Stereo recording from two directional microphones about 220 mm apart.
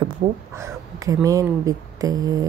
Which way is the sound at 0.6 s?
15° right (ahead or behind).